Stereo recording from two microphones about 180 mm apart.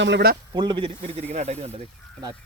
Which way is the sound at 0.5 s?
25° right (ahead or behind).